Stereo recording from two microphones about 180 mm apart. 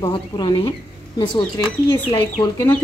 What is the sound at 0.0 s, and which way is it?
Speech, 20° left (ahead or behind).